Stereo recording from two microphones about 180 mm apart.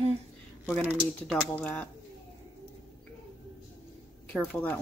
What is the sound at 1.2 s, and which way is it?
Speech, 5° left (ahead or behind).